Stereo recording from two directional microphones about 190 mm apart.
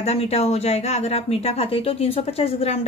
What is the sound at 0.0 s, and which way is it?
Speech, 35° left (ahead or behind).